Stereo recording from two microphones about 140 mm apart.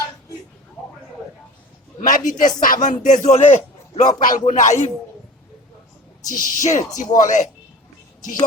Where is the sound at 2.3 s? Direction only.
70° left (ahead or behind).